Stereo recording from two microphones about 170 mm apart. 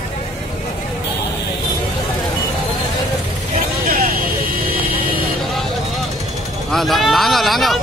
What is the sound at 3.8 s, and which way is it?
Vehicle, 55° right (ahead or behind).